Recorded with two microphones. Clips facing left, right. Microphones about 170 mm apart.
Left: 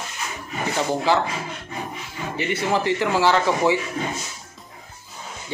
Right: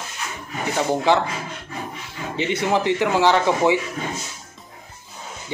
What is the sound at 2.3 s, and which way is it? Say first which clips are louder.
A man's voice: right 2 dB; 20° right (ahead or behind).